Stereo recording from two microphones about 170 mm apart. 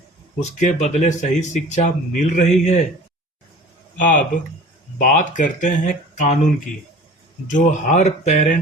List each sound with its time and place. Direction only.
0.3 s speech: 40° left (ahead or behind)
3.9 s speech: 50° left (ahead or behind)